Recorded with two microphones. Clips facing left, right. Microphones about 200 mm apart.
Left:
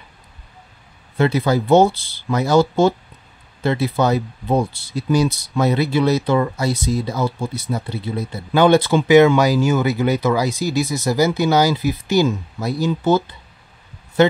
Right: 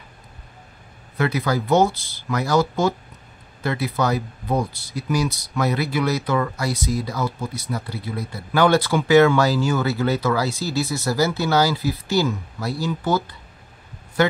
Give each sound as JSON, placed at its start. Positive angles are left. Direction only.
{"t": 1.1, "sound": "speech", "side_deg": 25}
{"t": 3.6, "sound": "speech", "side_deg": 25}